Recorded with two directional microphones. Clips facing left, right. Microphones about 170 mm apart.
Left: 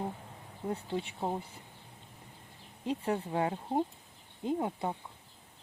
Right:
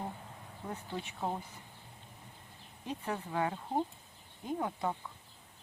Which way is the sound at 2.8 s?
30° left (ahead or behind).